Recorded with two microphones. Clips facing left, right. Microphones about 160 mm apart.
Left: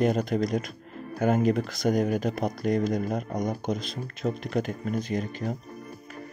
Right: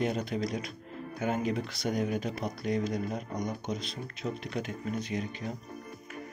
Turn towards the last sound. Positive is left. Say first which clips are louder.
# left 5 dB
turn(degrees=45)  # may be behind; listen again after turning